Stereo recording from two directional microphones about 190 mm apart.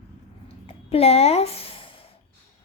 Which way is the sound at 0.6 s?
30° left (ahead or behind).